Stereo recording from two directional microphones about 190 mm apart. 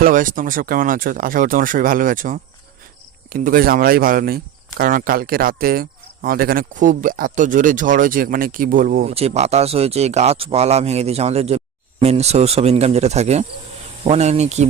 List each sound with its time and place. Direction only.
0.0 s speech: 45° right (ahead or behind)
9.1 s speech: 35° right (ahead or behind)